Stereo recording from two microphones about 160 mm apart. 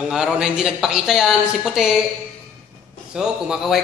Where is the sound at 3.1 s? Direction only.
5° right (ahead or behind).